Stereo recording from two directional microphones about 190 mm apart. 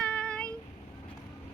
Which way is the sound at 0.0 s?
5° left (ahead or behind).